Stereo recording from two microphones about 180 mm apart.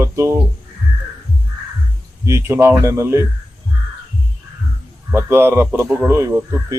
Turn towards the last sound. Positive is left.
turn(degrees=-15)  # may be behind; listen again after turning